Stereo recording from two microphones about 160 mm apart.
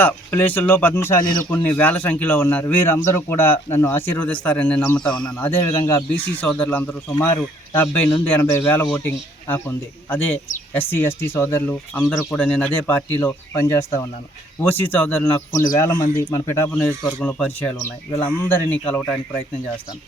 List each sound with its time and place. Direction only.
0.0 s speech: 10° left (ahead or behind)